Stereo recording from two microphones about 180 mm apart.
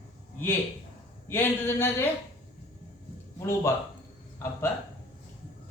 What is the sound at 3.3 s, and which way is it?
Speech, 15° left (ahead or behind).